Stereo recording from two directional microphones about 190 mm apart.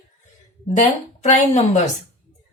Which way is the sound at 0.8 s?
35° left (ahead or behind).